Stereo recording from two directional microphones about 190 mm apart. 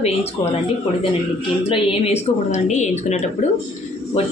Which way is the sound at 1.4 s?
30° left (ahead or behind).